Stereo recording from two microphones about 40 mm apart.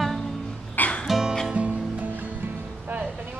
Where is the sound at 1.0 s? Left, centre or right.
Centre.